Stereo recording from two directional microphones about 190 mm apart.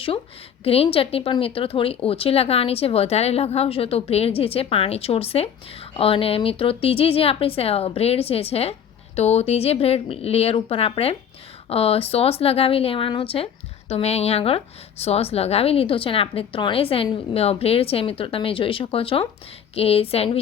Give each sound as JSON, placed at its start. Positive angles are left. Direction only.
{"t": 0.6, "sound": "speech", "side_deg": 30}